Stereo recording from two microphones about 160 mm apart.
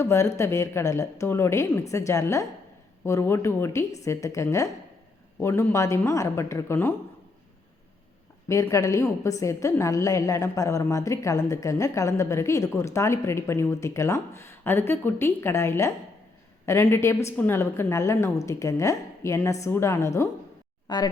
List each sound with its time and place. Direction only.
0.0 s a woman's voice: 15° left (ahead or behind)
8.4 s a woman's voice: 20° left (ahead or behind)